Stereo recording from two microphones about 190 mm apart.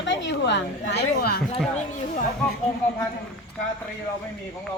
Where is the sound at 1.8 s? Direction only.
40° left (ahead or behind).